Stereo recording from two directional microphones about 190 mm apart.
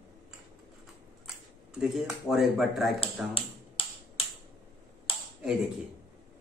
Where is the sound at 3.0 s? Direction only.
30° left (ahead or behind).